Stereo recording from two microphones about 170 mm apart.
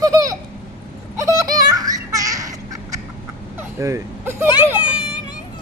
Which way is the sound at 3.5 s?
15° right (ahead or behind).